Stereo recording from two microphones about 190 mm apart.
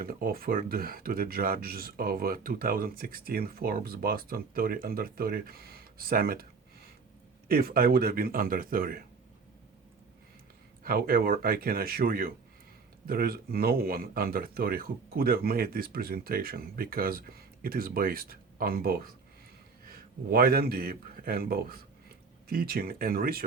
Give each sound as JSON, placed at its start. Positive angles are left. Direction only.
{"t": 0.0, "sound": "speech", "side_deg": -50}
{"t": 10.8, "sound": "a man's voice", "side_deg": -50}